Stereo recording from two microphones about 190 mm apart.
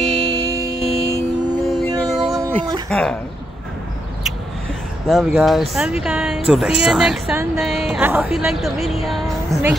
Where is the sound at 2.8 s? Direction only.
5° left (ahead or behind).